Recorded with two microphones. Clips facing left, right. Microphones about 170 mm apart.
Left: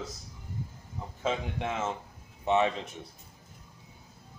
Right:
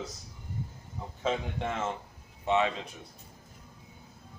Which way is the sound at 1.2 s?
5° left (ahead or behind).